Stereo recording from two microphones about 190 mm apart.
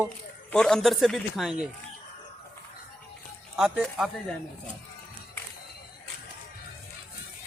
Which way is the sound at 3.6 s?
Centre (ahead or behind).